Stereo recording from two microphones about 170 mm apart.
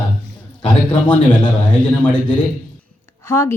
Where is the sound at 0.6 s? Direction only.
10° left (ahead or behind).